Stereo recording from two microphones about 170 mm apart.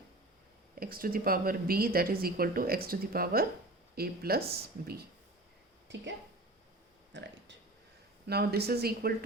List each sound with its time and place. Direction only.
0.8 s speech: 60° right (ahead or behind)
5.9 s speech: 90° right
7.1 s speech: 90° right
8.3 s speech: 70° right (ahead or behind)